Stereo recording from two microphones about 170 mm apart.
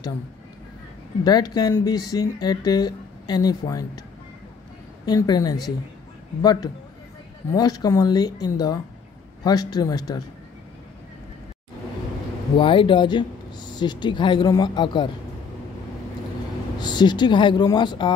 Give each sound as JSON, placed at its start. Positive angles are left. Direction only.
{"t": 1.2, "sound": "speech", "side_deg": 25}
{"t": 5.0, "sound": "speech", "side_deg": 25}
{"t": 12.5, "sound": "speech", "side_deg": 30}
{"t": 16.7, "sound": "speech", "side_deg": 25}